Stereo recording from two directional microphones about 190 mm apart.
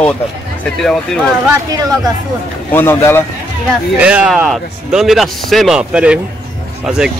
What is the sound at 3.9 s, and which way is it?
Speech, 5° right (ahead or behind).